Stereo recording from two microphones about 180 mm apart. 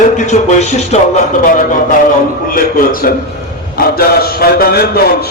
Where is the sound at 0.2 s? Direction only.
40° left (ahead or behind).